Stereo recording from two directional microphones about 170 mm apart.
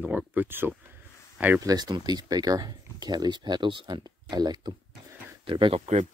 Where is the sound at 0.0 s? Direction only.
10° right (ahead or behind).